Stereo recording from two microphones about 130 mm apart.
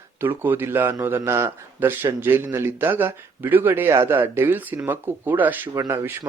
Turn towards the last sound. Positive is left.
turn(degrees=-20)  # may be behind; listen again after turning